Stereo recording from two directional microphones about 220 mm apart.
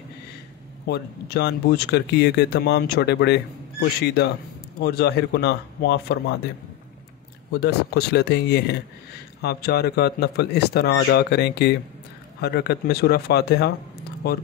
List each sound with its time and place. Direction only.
0.8 s speech: 45° left (ahead or behind)
7.6 s speech: 50° left (ahead or behind)